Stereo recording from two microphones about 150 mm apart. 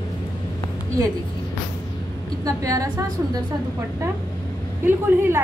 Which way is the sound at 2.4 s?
20° right (ahead or behind).